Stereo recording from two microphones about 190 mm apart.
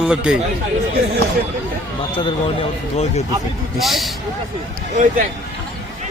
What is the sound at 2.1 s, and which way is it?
Speech, 30° left (ahead or behind).